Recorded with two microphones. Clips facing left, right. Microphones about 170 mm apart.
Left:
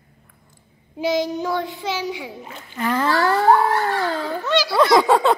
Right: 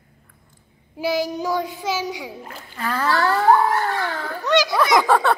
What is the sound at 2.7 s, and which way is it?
Speech, 20° left (ahead or behind).